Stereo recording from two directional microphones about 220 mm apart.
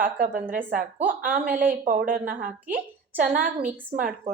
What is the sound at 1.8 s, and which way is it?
A woman's voice, 40° right (ahead or behind).